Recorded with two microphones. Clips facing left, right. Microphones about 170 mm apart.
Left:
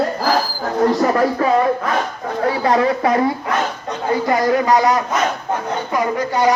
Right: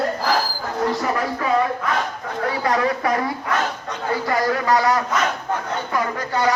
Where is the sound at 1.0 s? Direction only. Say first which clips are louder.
Left 7 dB; 40° left (ahead or behind).